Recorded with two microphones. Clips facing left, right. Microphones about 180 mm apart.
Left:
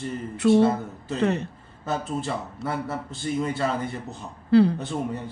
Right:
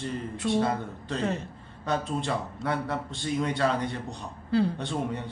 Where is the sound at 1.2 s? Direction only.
70° left (ahead or behind).